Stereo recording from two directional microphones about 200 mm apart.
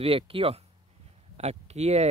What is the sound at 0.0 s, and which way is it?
Speech, 30° right (ahead or behind).